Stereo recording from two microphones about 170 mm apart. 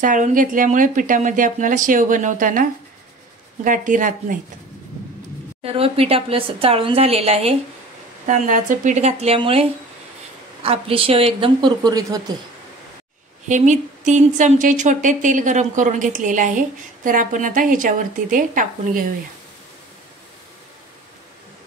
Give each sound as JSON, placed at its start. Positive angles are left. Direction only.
{"t": 0.0, "sound": "a woman's voice", "side_deg": -50}
{"t": 5.6, "sound": "a woman's voice", "side_deg": -35}
{"t": 8.3, "sound": "a woman's voice", "side_deg": -50}
{"t": 13.5, "sound": "a woman's voice", "side_deg": -45}